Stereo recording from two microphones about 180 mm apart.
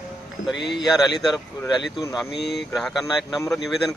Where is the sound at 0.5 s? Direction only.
75° left (ahead or behind).